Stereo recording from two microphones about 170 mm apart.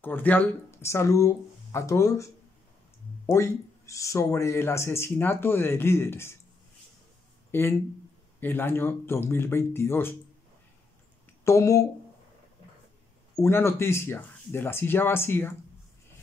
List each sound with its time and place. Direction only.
0.0 s speech: 10° left (ahead or behind)
3.3 s speech: 15° left (ahead or behind)
7.5 s speech: 15° left (ahead or behind)
11.4 s speech: 20° left (ahead or behind)
13.4 s speech: 15° left (ahead or behind)